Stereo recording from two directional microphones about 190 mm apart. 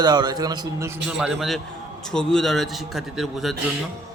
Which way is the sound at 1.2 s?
Centre (ahead or behind).